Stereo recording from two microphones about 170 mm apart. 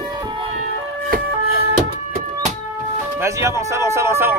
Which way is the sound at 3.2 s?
15° right (ahead or behind).